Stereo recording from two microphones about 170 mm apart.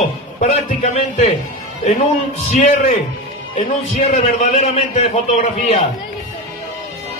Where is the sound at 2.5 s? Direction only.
45° left (ahead or behind).